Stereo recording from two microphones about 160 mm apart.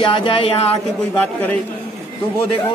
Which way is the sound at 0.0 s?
35° left (ahead or behind).